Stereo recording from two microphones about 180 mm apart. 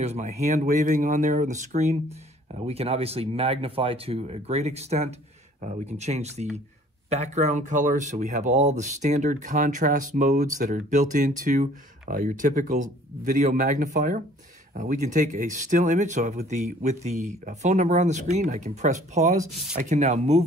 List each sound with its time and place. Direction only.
0.0 s speech: 40° right (ahead or behind)